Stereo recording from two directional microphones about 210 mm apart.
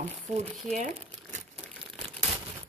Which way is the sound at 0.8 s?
35° right (ahead or behind).